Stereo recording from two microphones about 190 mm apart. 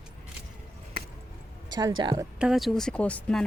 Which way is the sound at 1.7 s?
25° right (ahead or behind).